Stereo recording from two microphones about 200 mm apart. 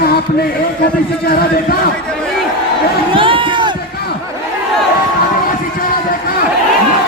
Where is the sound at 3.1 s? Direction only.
25° right (ahead or behind).